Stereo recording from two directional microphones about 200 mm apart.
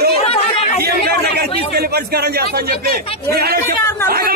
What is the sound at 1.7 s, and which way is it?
A man's voice, 50° right (ahead or behind).